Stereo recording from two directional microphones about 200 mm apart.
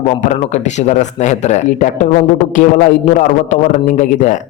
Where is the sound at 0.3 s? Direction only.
35° left (ahead or behind).